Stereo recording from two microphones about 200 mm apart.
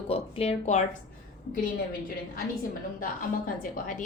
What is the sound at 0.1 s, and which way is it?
Speech, 30° left (ahead or behind).